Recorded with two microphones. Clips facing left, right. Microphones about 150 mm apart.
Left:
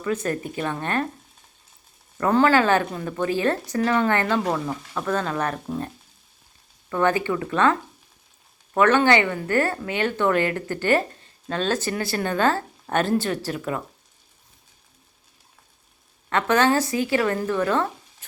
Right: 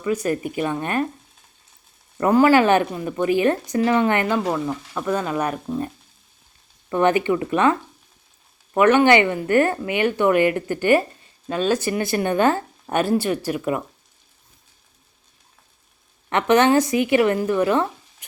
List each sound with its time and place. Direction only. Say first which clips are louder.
0.0 s a woman's voice: right 3 dB; 10° right (ahead or behind)
2.1 s a woman's voice: right 3 dB; 15° right (ahead or behind)
6.9 s a woman's voice: right 4 dB; 20° right (ahead or behind)
16.3 s a woman's voice: right 4 dB; 20° right (ahead or behind)